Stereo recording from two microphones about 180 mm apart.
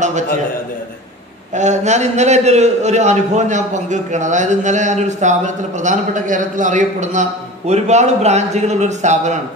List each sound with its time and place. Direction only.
1.5 s a man's voice: 40° right (ahead or behind)